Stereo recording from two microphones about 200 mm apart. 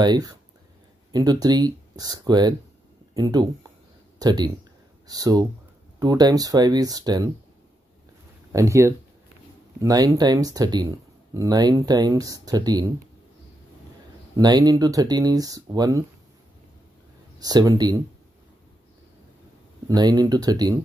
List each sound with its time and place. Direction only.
0.0 s speech: 20° right (ahead or behind)
8.5 s speech: 15° right (ahead or behind)
14.3 s speech: 20° right (ahead or behind)
17.4 s speech: 20° right (ahead or behind)
19.9 s speech: 20° right (ahead or behind)